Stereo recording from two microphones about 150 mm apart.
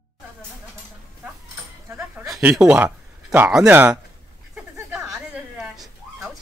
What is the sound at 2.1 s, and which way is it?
Speech, 5° right (ahead or behind).